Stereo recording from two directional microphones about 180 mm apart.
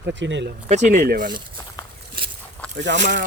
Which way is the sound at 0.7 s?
40° right (ahead or behind).